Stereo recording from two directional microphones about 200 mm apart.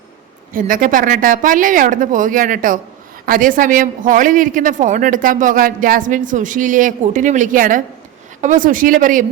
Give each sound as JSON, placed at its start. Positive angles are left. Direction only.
{"t": 0.5, "sound": "a woman's voice", "side_deg": -40}